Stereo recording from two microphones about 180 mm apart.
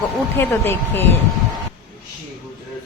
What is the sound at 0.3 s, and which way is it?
Speech, 15° left (ahead or behind).